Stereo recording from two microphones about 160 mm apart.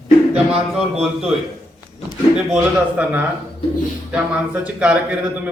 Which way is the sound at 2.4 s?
5° right (ahead or behind).